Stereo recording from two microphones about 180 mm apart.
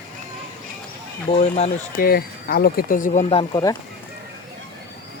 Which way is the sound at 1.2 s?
35° left (ahead or behind).